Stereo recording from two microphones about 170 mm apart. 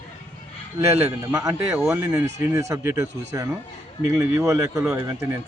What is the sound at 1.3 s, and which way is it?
A man's voice, 20° right (ahead or behind).